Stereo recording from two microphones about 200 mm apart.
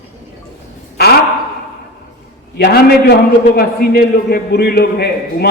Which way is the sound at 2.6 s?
55° left (ahead or behind).